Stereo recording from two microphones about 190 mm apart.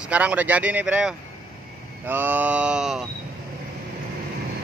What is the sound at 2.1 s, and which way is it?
Speech, 10° right (ahead or behind).